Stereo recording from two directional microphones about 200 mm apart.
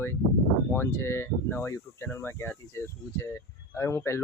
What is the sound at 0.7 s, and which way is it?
Speech, 10° left (ahead or behind).